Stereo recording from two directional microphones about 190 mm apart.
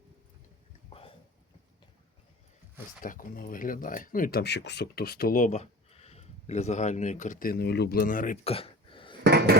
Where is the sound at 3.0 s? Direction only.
45° left (ahead or behind).